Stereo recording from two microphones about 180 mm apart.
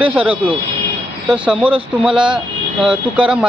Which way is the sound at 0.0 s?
10° right (ahead or behind).